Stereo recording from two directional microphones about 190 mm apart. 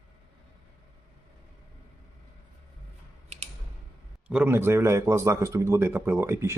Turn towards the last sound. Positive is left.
turn(degrees=-15)  # may be behind; listen again after turning